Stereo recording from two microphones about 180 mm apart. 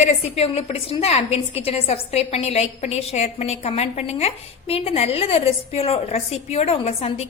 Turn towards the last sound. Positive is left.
turn(degrees=35)  # may be behind; listen again after turning